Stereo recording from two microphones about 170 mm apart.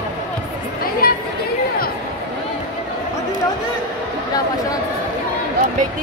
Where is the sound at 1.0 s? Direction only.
60° left (ahead or behind).